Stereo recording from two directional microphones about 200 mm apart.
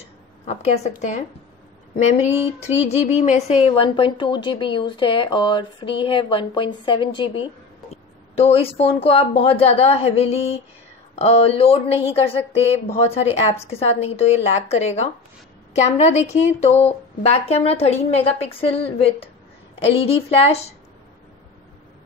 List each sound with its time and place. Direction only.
0.5 s a woman's voice: 30° left (ahead or behind)
2.8 s a woman's voice: 30° left (ahead or behind)